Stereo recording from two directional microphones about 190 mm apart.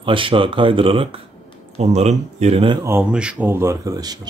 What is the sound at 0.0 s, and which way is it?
Speech, 25° right (ahead or behind).